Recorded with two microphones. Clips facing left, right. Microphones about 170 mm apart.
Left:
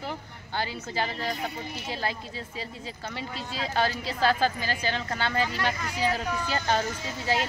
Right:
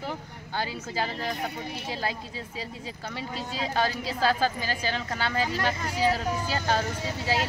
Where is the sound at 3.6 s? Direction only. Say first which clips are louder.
Even; 10° right (ahead or behind).